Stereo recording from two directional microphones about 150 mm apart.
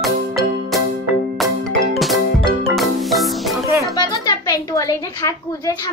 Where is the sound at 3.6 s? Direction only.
20° right (ahead or behind).